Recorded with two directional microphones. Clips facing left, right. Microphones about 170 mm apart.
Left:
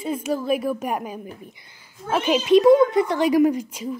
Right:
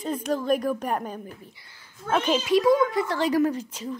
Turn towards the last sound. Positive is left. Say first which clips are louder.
# left 5 dB
turn(degrees=10)  # may be behind; listen again after turning